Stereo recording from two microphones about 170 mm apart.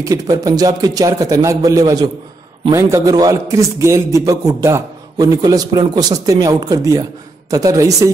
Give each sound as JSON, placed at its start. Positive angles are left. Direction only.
{"t": 0.0, "sound": "a man's voice", "side_deg": -20}